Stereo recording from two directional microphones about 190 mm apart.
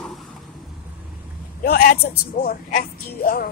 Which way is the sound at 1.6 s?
55° left (ahead or behind).